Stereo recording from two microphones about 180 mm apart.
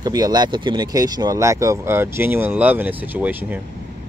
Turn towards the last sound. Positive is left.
turn(degrees=-10)  # may be behind; listen again after turning